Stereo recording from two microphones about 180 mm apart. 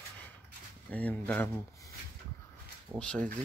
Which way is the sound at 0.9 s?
10° left (ahead or behind).